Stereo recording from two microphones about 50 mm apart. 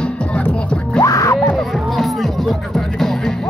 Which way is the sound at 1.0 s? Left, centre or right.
Left.